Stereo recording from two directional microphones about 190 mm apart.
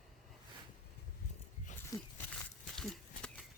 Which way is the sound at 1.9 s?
20° left (ahead or behind).